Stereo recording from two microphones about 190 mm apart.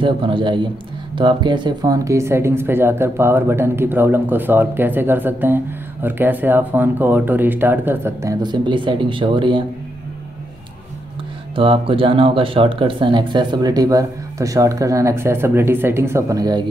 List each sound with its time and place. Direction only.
0.0 s speech: 25° right (ahead or behind)
11.5 s speech: 30° right (ahead or behind)